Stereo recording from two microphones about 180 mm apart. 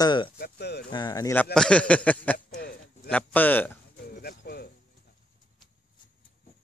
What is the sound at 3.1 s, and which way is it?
Speech, 10° left (ahead or behind).